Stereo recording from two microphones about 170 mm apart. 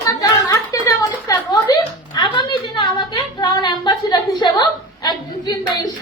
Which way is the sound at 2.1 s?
25° left (ahead or behind).